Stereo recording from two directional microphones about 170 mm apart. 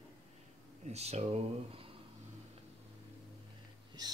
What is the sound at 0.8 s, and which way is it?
Speech, 40° right (ahead or behind).